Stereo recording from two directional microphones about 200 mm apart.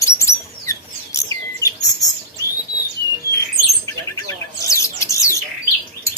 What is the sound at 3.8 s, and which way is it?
Bird, 15° left (ahead or behind).